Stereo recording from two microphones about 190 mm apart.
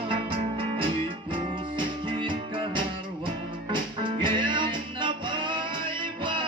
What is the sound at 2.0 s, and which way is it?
Music, 25° right (ahead or behind).